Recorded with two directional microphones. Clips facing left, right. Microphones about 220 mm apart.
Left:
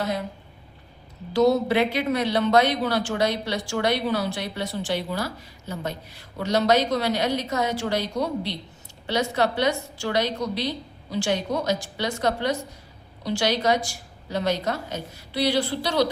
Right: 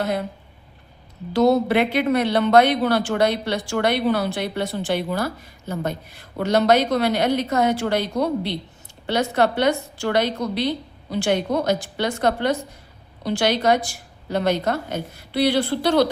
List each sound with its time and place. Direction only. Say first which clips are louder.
1.3 s a woman's voice: right 2 dB; 55° right (ahead or behind)